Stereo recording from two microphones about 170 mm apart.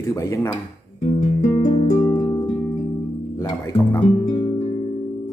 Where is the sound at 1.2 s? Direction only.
45° left (ahead or behind).